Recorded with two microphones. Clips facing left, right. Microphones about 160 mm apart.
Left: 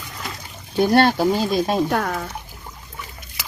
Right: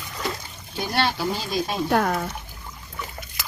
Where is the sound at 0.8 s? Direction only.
50° left (ahead or behind).